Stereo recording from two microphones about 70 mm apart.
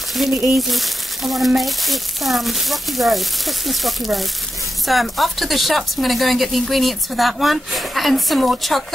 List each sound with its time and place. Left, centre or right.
0.1 s speech: centre